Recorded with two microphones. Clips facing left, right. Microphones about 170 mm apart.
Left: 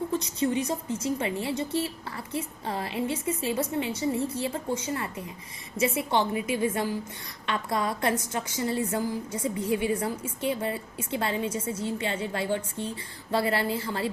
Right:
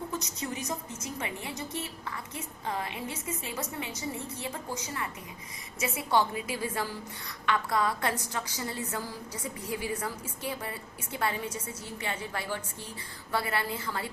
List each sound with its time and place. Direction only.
0.1 s a woman's voice: 30° left (ahead or behind)